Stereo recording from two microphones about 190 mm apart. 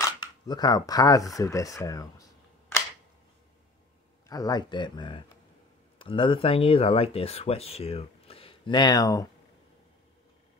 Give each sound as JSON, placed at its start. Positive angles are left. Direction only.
{"t": 0.0, "sound": "speech", "side_deg": 20}
{"t": 4.3, "sound": "speech", "side_deg": 20}